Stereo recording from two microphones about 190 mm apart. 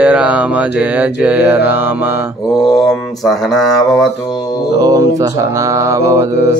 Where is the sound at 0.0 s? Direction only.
5° right (ahead or behind).